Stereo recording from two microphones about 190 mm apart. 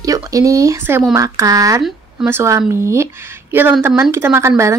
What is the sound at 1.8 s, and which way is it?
Speech, 5° right (ahead or behind).